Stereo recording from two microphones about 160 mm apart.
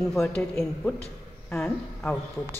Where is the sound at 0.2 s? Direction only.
10° left (ahead or behind).